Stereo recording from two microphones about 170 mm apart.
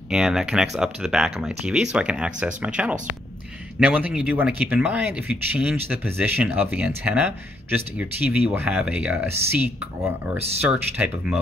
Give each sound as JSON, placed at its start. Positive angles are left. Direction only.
{"t": 0.1, "sound": "speech", "side_deg": -5}